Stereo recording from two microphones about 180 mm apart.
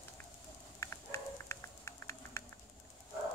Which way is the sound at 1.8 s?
15° left (ahead or behind).